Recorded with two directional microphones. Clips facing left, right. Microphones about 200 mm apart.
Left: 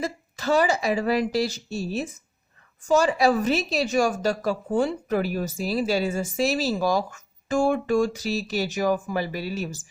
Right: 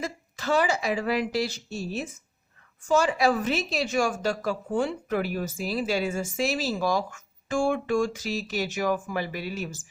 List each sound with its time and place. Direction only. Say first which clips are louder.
0.0 s a woman's voice: left 4 dB; 40° left (ahead or behind)